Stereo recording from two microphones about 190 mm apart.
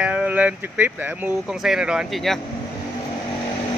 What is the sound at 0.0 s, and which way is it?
Speech, 5° right (ahead or behind).